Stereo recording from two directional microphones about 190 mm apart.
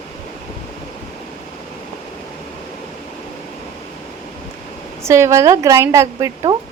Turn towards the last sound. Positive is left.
turn(degrees=-20)  # may be behind; listen again after turning